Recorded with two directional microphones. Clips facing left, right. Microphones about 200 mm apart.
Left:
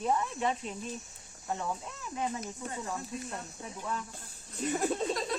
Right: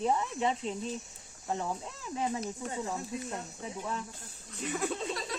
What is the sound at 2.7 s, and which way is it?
Speech, 20° right (ahead or behind).